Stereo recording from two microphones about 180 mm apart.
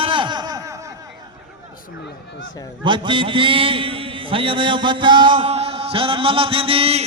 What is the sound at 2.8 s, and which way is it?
A man's voice, 25° right (ahead or behind).